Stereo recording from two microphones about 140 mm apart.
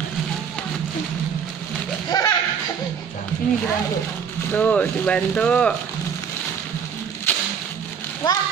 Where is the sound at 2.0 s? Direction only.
25° left (ahead or behind).